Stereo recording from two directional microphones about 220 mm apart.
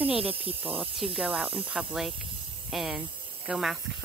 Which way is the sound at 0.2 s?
25° right (ahead or behind).